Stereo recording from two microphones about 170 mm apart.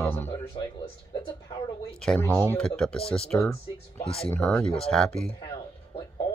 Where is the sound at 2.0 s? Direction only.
5° left (ahead or behind).